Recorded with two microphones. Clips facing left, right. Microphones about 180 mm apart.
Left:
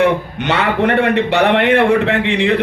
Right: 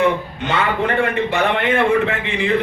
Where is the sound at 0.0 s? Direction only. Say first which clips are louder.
Left 3 dB; 75° left (ahead or behind).